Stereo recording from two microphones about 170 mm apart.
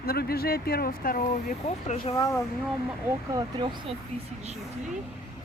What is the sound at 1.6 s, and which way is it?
Speech, 40° left (ahead or behind).